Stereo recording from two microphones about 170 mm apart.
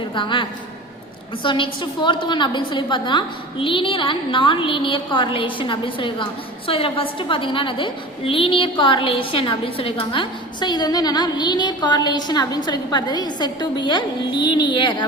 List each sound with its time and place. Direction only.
0.1 s a woman's voice: 30° left (ahead or behind)
1.5 s a woman's voice: 30° left (ahead or behind)